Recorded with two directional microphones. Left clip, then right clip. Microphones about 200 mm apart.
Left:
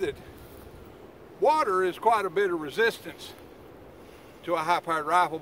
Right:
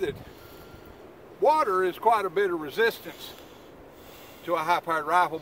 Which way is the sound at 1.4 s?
5° right (ahead or behind).